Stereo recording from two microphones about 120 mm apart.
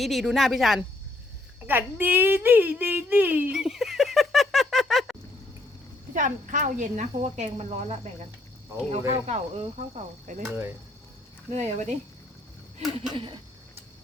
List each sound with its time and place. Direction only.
0.0 s a woman's voice: centre (ahead or behind)
1.6 s speech: 15° right (ahead or behind)
3.5 s a sound: 5° right (ahead or behind)
6.1 s speech: 90° right
11.5 s speech: 70° right (ahead or behind)